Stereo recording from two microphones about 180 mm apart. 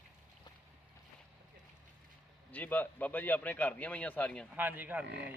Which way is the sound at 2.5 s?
10° left (ahead or behind).